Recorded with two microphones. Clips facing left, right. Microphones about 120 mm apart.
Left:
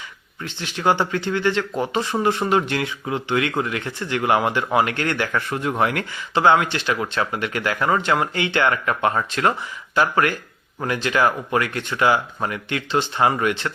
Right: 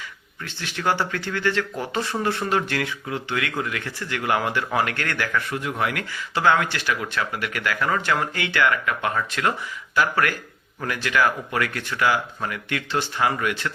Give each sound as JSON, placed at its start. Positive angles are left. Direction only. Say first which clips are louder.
{"t": 0.4, "sound": "speech", "louder": "left 4 dB", "side_deg": 20}